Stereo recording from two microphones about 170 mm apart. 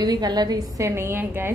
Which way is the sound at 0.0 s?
25° right (ahead or behind).